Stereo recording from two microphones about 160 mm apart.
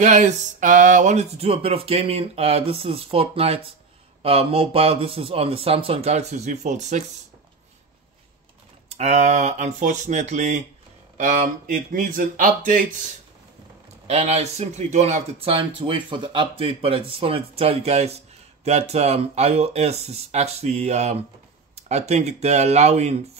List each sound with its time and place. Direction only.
0.0 s speech: 50° right (ahead or behind)
8.8 s speech: 40° right (ahead or behind)
14.0 s speech: 40° right (ahead or behind)